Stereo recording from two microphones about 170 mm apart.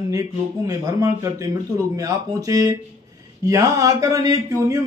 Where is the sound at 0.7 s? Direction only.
20° right (ahead or behind).